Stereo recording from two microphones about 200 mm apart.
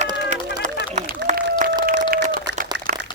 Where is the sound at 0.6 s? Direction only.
40° right (ahead or behind).